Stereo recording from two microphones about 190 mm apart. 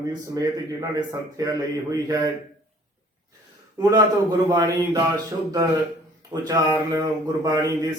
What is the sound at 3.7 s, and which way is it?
A man's voice, 20° right (ahead or behind).